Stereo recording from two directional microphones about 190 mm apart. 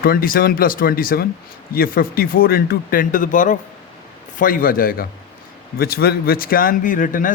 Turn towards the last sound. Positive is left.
turn(degrees=45)  # may be behind; listen again after turning